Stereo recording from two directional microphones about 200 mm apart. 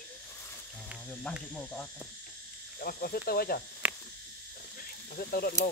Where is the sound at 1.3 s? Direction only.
5° left (ahead or behind).